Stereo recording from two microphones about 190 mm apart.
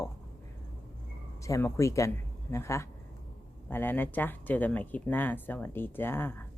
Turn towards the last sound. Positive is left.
turn(degrees=10)  # may be behind; listen again after turning